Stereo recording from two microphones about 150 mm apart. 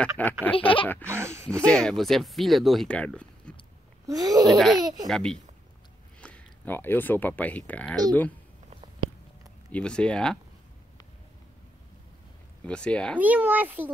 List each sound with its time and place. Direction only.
0.0 s speech: 10° left (ahead or behind)
0.6 s a sound: 35° left (ahead or behind)
1.0 s a child's voice: 15° right (ahead or behind)
1.5 s speech: 5° left (ahead or behind)
4.1 s speech: 25° right (ahead or behind)
5.0 s speech: 5° left (ahead or behind)
9.7 s speech: 5° left (ahead or behind)
12.6 s speech: 5° left (ahead or behind)
13.2 s a child's voice: 10° right (ahead or behind)